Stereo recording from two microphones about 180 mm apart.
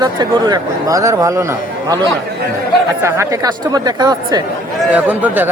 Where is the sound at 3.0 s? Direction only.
15° right (ahead or behind).